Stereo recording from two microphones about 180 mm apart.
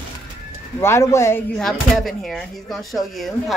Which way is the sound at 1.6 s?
Centre (ahead or behind).